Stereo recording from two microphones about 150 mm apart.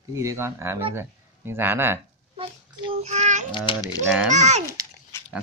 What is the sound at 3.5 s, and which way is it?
Speech, 30° left (ahead or behind).